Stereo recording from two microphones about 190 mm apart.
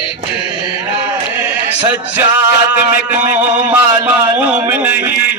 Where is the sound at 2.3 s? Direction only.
10° right (ahead or behind).